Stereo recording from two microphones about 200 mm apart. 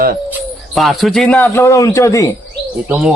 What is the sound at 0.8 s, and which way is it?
Speech, centre (ahead or behind).